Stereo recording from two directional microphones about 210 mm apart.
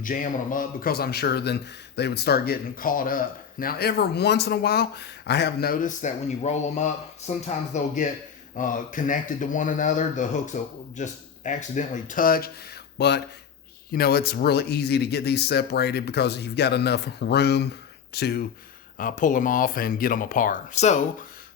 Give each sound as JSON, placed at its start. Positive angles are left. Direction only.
{"t": 0.0, "sound": "speech", "side_deg": 40}
{"t": 18.9, "sound": "speech", "side_deg": 40}